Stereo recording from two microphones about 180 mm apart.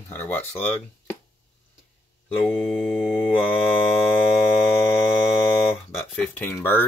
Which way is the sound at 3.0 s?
15° left (ahead or behind).